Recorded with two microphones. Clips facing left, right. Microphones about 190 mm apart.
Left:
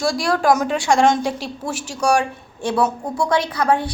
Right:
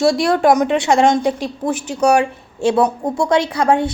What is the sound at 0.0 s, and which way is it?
A woman's voice, 25° right (ahead or behind).